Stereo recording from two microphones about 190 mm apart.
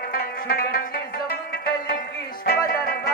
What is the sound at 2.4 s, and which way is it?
Music, 55° left (ahead or behind).